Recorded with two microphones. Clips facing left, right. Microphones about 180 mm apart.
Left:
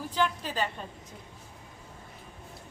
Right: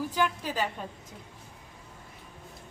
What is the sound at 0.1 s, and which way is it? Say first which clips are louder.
Speech: even; 10° right (ahead or behind).